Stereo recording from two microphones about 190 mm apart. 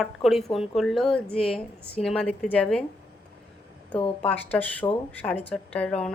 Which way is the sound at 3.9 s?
30° left (ahead or behind).